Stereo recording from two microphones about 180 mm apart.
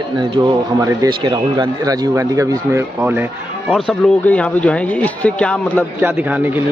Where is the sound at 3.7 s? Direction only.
5° left (ahead or behind).